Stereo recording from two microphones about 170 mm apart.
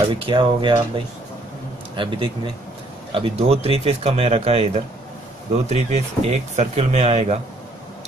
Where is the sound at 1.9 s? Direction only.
30° right (ahead or behind).